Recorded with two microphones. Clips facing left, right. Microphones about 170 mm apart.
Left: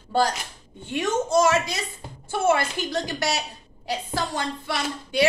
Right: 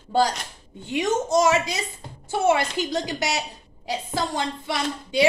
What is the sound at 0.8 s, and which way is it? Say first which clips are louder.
A woman's voice: right 1 dB; 20° right (ahead or behind).